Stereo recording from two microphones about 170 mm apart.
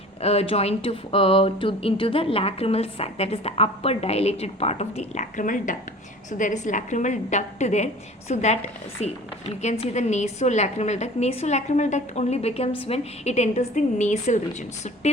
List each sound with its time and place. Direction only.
0.2 s a woman's voice: 35° left (ahead or behind)